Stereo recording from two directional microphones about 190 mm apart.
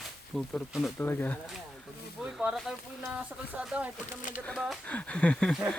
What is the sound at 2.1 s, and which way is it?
Speech, 5° right (ahead or behind).